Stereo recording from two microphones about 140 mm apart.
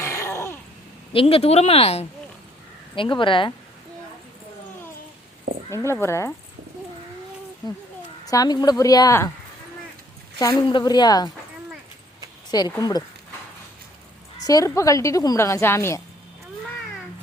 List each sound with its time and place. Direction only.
0.0 s a sound: 20° left (ahead or behind)
1.1 s speech: 40° left (ahead or behind)
5.7 s a woman's voice: 20° left (ahead or behind)
8.2 s a woman's voice: 25° left (ahead or behind)
10.3 s a woman's voice: 30° left (ahead or behind)
12.5 s speech: 30° left (ahead or behind)
14.4 s a woman's voice: 25° left (ahead or behind)